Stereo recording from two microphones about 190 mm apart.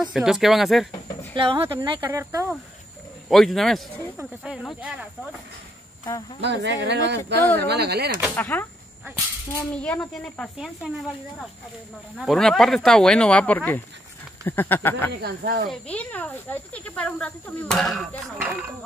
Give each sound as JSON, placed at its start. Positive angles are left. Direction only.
{"t": 0.1, "sound": "speech", "side_deg": 0}
{"t": 1.3, "sound": "speech", "side_deg": -30}
{"t": 3.3, "sound": "speech", "side_deg": 0}
{"t": 6.4, "sound": "speech", "side_deg": -65}
{"t": 8.4, "sound": "speech", "side_deg": 10}
{"t": 15.2, "sound": "speech", "side_deg": -55}
{"t": 15.7, "sound": "speech", "side_deg": 5}